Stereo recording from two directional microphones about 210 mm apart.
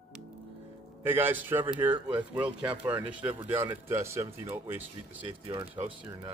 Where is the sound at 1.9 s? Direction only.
25° right (ahead or behind).